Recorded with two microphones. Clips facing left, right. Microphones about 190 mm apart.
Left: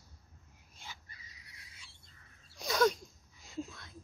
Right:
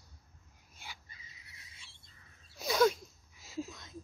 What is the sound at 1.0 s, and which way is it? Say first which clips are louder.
Bird: even; 25° right (ahead or behind).